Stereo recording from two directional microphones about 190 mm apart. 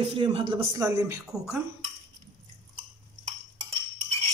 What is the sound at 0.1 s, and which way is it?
Speech, 25° right (ahead or behind).